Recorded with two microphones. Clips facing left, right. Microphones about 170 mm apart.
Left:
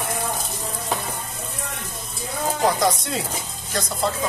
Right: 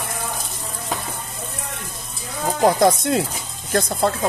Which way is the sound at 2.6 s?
50° right (ahead or behind).